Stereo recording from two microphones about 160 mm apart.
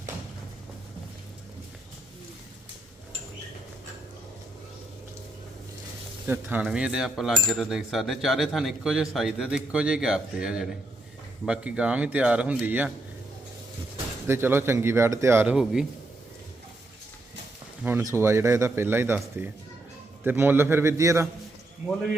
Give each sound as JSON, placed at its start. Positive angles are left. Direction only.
{"t": 6.2, "sound": "speech", "side_deg": -10}
{"t": 14.3, "sound": "speech", "side_deg": -15}
{"t": 18.1, "sound": "speech", "side_deg": -15}